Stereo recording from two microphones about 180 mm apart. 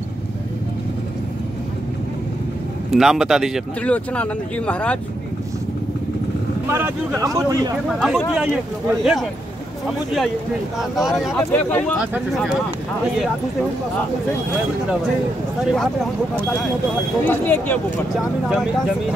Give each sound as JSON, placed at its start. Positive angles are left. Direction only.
{"t": 2.9, "sound": "speech", "side_deg": 0}
{"t": 6.7, "sound": "speech", "side_deg": -15}
{"t": 7.7, "sound": "speech", "side_deg": -5}
{"t": 15.6, "sound": "speech", "side_deg": 0}
{"t": 17.2, "sound": "speech", "side_deg": 10}
{"t": 18.1, "sound": "speech", "side_deg": 0}